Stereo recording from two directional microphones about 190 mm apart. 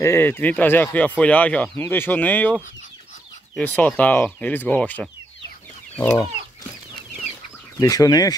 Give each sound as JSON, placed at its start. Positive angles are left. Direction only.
{"t": 0.0, "sound": "speech", "side_deg": 10}
{"t": 5.9, "sound": "chicken", "side_deg": 10}
{"t": 7.8, "sound": "speech", "side_deg": 20}